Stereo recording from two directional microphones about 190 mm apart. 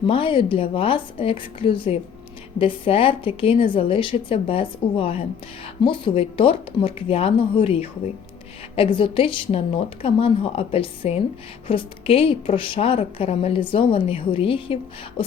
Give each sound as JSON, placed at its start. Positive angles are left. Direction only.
{"t": 0.1, "sound": "a woman's voice", "side_deg": 25}